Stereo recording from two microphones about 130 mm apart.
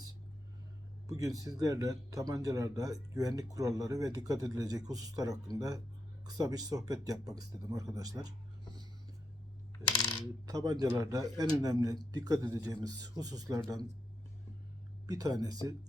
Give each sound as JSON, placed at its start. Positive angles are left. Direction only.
{"t": 1.0, "sound": "speech", "side_deg": -25}
{"t": 10.4, "sound": "speech", "side_deg": -30}
{"t": 15.0, "sound": "speech", "side_deg": -30}